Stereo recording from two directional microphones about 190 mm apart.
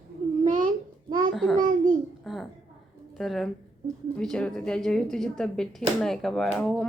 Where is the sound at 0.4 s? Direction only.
45° right (ahead or behind).